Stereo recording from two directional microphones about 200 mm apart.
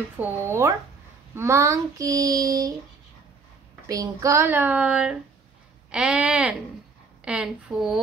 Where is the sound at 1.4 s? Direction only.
15° right (ahead or behind).